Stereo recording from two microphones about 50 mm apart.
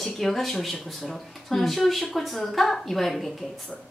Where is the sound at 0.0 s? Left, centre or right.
Centre.